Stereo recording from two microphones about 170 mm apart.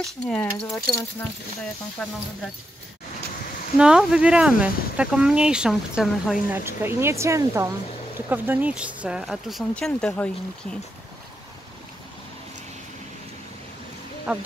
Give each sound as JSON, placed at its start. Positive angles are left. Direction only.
{"t": 0.0, "sound": "speech", "side_deg": 5}
{"t": 2.0, "sound": "speech", "side_deg": 0}
{"t": 3.7, "sound": "speech", "side_deg": -5}
{"t": 6.6, "sound": "speech", "side_deg": -15}
{"t": 14.3, "sound": "speech", "side_deg": -5}